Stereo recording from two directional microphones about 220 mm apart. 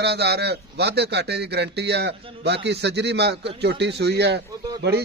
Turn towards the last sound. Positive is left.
turn(degrees=-50)  # may be behind; listen again after turning